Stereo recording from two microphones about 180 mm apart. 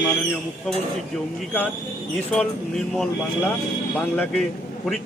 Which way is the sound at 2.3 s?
5° left (ahead or behind).